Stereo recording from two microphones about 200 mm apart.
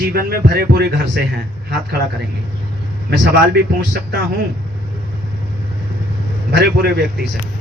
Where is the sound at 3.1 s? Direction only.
55° right (ahead or behind).